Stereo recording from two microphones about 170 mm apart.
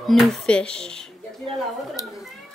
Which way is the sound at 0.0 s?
Centre (ahead or behind).